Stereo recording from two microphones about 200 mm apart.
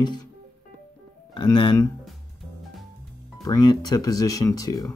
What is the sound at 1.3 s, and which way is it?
Speech, 25° left (ahead or behind).